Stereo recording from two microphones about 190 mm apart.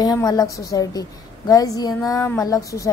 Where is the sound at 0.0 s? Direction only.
20° left (ahead or behind).